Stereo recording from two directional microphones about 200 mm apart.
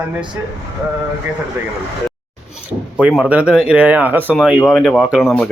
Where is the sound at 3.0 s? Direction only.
5° right (ahead or behind).